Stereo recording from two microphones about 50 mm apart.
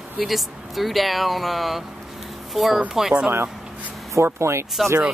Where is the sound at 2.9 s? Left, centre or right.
Centre.